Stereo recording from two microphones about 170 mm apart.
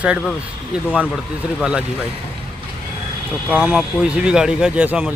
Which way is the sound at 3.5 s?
5° right (ahead or behind).